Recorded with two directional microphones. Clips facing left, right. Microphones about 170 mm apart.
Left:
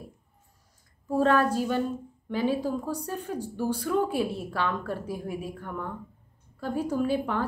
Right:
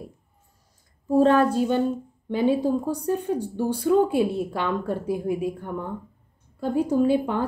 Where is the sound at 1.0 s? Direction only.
25° right (ahead or behind).